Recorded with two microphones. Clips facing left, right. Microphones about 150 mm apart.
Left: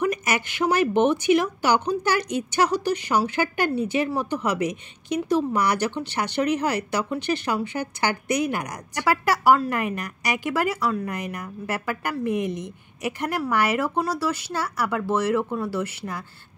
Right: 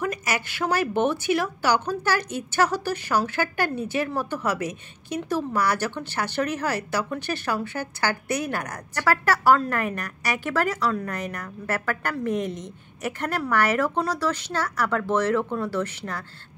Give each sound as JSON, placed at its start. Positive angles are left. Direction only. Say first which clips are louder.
{"t": 0.0, "sound": "speech", "louder": "left 3 dB", "side_deg": 20}